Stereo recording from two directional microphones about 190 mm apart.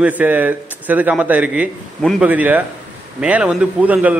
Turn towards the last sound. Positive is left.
turn(degrees=-10)  # may be behind; listen again after turning